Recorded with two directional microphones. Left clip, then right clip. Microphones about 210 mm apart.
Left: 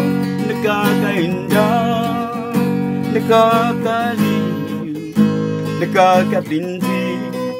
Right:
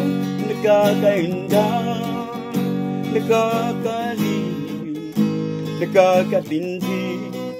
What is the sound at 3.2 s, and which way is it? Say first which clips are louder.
Music: left 7 dB; 20° left (ahead or behind).